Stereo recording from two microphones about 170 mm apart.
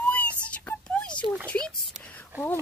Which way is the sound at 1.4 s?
5° left (ahead or behind).